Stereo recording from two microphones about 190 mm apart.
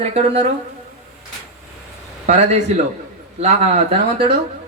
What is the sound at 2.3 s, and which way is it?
Speech, 35° right (ahead or behind).